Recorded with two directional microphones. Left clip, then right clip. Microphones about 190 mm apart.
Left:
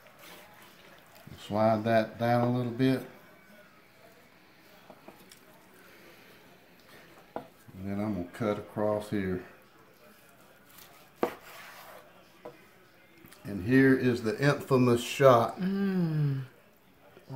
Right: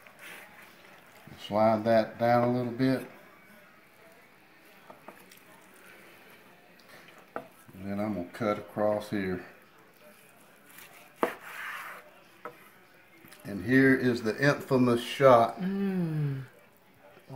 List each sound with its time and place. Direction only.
1.4 s speech: centre (ahead or behind)
7.3 s speech: 5° right (ahead or behind)
13.5 s speech: 5° right (ahead or behind)
14.7 s speech: 20° left (ahead or behind)
15.6 s speech: 5° left (ahead or behind)